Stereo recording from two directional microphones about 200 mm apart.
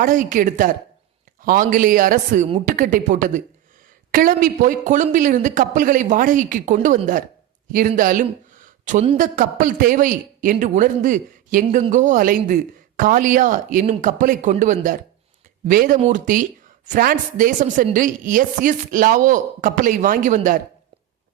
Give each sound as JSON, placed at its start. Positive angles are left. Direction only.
{"t": 0.0, "sound": "speech", "side_deg": -40}